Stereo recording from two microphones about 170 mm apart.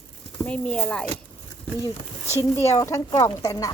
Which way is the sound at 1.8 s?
15° right (ahead or behind).